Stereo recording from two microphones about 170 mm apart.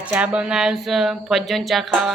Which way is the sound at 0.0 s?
10° right (ahead or behind).